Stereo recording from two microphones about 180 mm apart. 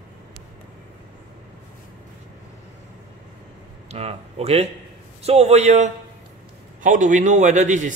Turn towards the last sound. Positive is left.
turn(degrees=-45)  # may be behind; listen again after turning